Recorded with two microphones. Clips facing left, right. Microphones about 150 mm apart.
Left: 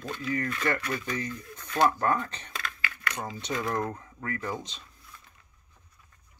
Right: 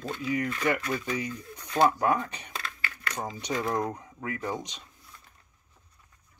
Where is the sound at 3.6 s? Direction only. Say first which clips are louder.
Right 1 dB; 15° right (ahead or behind).